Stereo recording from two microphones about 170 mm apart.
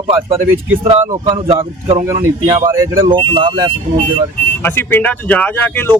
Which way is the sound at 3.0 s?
30° right (ahead or behind).